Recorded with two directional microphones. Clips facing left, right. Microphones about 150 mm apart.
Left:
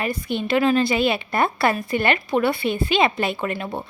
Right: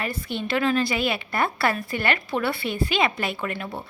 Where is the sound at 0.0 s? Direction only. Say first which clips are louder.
Left 4 dB; 15° left (ahead or behind).